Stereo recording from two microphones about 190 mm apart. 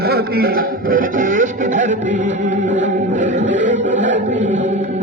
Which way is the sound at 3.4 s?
70° right (ahead or behind).